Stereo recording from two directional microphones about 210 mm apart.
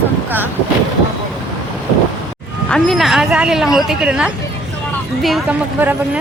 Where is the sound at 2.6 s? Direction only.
5° left (ahead or behind).